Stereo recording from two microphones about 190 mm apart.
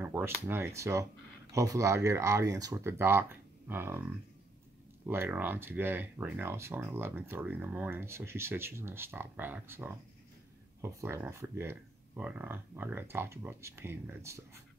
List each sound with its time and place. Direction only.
0.0 s speech: 10° right (ahead or behind)
5.0 s speech: 10° right (ahead or behind)